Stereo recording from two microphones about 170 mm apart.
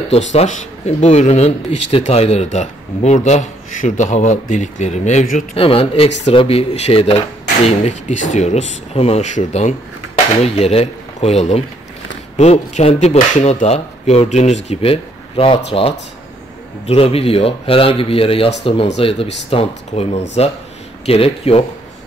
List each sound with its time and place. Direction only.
0.1 s speech: 40° left (ahead or behind)